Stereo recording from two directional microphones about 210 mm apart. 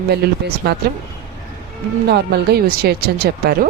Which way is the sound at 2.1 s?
50° right (ahead or behind).